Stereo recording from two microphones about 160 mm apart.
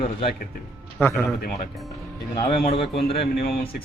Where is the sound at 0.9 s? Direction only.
15° left (ahead or behind).